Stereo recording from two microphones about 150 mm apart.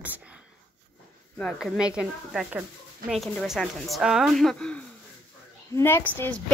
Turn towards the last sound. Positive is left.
turn(degrees=10)  # may be behind; listen again after turning